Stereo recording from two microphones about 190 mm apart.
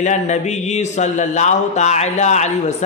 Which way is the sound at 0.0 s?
40° left (ahead or behind).